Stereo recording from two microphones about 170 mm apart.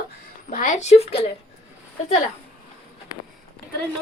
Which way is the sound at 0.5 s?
45° left (ahead or behind).